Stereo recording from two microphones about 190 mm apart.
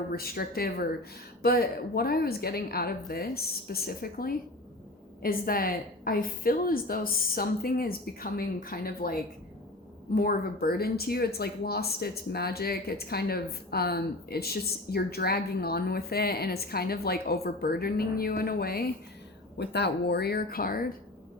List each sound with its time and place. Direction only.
0.1 s a woman's voice: 50° left (ahead or behind)
10.2 s speech: 50° left (ahead or behind)